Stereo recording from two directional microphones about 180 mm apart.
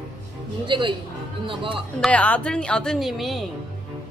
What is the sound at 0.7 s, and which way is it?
A woman's voice, 25° right (ahead or behind).